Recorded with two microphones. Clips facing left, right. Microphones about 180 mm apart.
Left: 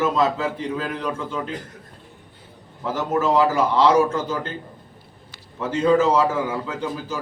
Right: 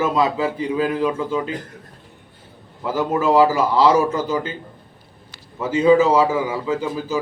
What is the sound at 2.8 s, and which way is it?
A man's voice, 5° right (ahead or behind).